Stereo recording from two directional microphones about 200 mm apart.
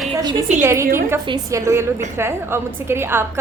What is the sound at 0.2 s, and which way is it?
A woman's voice, 20° right (ahead or behind).